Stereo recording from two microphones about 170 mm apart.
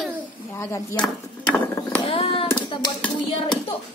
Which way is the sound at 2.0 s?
30° left (ahead or behind).